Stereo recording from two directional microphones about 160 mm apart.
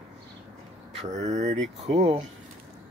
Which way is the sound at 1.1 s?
45° right (ahead or behind).